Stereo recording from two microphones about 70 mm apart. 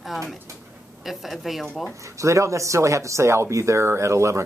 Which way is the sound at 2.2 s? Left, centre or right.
Right.